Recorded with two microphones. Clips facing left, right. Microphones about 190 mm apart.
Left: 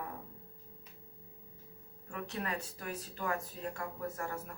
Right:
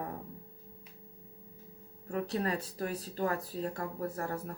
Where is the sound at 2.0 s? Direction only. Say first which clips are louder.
Right 7 dB; 35° right (ahead or behind).